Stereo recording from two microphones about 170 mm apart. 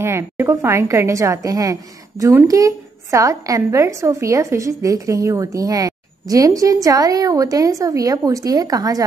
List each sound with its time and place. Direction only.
0.0 s a woman's voice: 15° right (ahead or behind)